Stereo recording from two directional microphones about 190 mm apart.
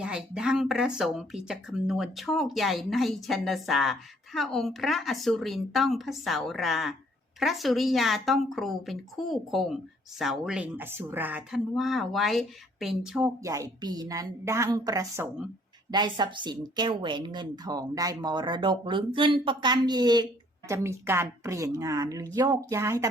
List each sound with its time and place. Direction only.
0.0 s speech: 5° right (ahead or behind)
13.5 s a woman's voice: 20° right (ahead or behind)